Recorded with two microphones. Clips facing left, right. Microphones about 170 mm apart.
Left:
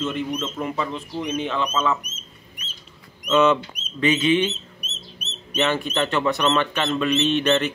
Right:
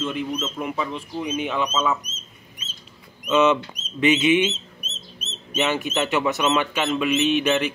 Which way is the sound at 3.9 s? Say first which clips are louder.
Right 1 dB; 10° right (ahead or behind).